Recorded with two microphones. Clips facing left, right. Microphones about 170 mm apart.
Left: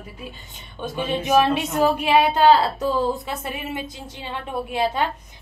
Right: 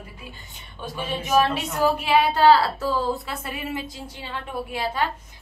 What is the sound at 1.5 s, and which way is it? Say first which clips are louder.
Speech: left 3 dB; 20° left (ahead or behind).